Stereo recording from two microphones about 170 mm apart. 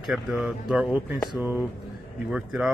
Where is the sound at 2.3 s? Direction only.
5° right (ahead or behind).